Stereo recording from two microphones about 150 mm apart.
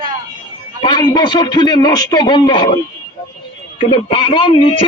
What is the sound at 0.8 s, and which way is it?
A man's voice, 30° left (ahead or behind).